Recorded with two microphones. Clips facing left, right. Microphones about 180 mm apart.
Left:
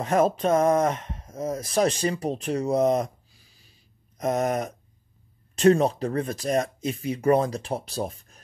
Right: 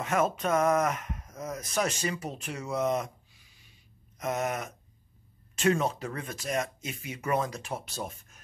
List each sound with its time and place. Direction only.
0.0 s speech: 35° left (ahead or behind)